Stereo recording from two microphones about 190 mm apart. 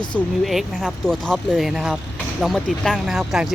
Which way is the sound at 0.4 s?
Centre (ahead or behind).